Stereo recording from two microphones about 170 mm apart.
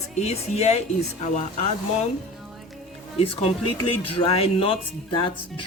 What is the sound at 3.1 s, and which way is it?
Speech, 35° left (ahead or behind).